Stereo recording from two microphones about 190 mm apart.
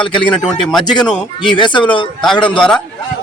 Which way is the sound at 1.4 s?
25° left (ahead or behind).